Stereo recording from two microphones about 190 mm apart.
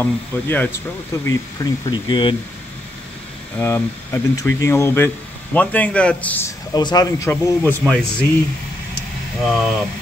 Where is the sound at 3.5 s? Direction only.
10° left (ahead or behind).